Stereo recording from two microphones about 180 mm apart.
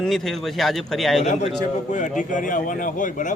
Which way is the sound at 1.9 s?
45° left (ahead or behind).